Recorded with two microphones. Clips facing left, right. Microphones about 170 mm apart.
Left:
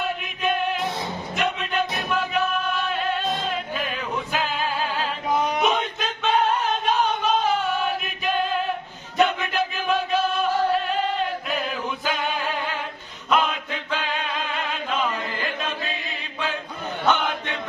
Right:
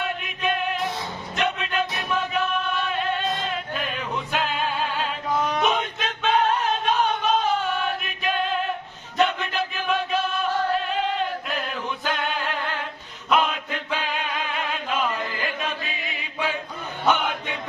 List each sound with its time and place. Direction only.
0.3 s music: centre (ahead or behind)
5.3 s a sound: 15° left (ahead or behind)
5.6 s music: centre (ahead or behind)
9.1 s battle cry: centre (ahead or behind)
10.7 s choir: centre (ahead or behind)
13.3 s music: centre (ahead or behind)